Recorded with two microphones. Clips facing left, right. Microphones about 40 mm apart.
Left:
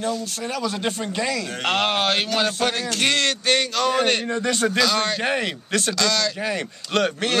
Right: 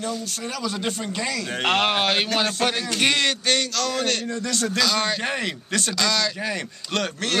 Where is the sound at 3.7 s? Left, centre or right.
Left.